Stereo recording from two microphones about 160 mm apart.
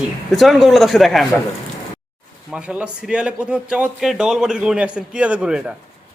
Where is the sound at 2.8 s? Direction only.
5° right (ahead or behind).